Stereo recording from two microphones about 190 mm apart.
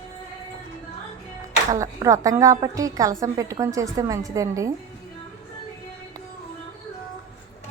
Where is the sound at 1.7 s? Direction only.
20° right (ahead or behind).